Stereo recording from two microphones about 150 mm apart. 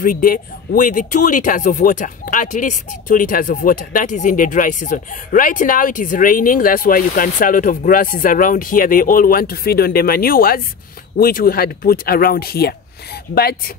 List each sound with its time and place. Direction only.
0.0 s speech: 70° left (ahead or behind); by 13.7 s 90° left